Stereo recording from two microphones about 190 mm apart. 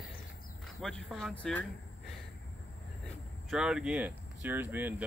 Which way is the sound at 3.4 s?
5° right (ahead or behind).